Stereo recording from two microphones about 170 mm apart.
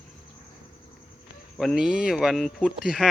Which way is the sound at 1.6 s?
Centre (ahead or behind).